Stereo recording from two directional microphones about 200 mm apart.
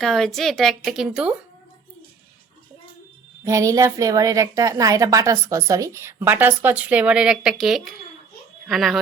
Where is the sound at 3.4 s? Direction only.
15° right (ahead or behind).